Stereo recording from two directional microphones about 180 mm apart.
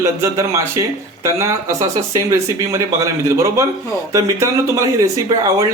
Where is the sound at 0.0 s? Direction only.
15° right (ahead or behind).